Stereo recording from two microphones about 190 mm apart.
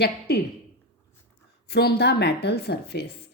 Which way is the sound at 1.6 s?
55° left (ahead or behind).